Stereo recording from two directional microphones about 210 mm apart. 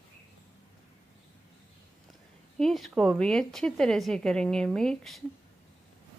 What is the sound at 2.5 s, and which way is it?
A woman's voice, centre (ahead or behind).